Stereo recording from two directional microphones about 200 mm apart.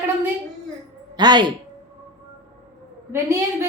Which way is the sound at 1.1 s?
20° right (ahead or behind).